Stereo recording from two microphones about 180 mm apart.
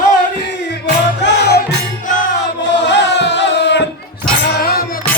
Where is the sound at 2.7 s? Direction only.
75° left (ahead or behind).